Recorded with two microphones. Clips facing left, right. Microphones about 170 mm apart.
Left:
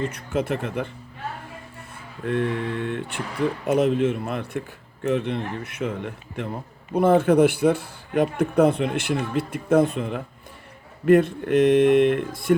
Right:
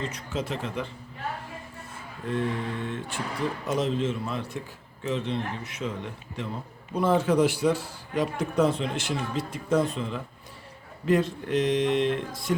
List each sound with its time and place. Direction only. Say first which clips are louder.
0.0 s speech: left 6 dB; 55° left (ahead or behind)
2.2 s speech: left 4 dB; 60° left (ahead or behind)